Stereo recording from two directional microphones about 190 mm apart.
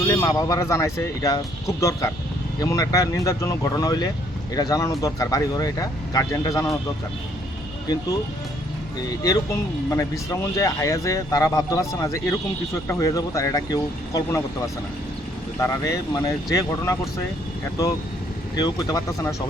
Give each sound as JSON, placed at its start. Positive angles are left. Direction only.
{"t": 0.1, "sound": "speech", "side_deg": 15}
{"t": 9.0, "sound": "speech", "side_deg": 20}
{"t": 15.6, "sound": "speech", "side_deg": 15}
{"t": 18.5, "sound": "speech", "side_deg": 20}